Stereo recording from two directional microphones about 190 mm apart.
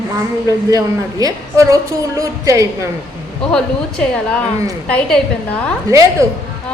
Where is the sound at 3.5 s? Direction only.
5° left (ahead or behind).